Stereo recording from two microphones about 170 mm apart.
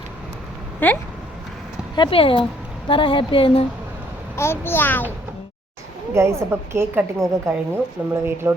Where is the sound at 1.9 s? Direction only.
30° left (ahead or behind).